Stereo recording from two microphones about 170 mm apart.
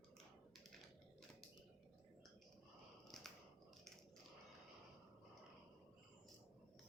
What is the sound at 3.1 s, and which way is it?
Biting, centre (ahead or behind).